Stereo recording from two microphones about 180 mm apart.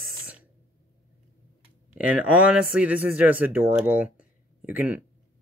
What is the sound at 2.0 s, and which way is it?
Speech, 5° right (ahead or behind).